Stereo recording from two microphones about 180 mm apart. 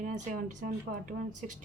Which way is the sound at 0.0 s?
45° right (ahead or behind).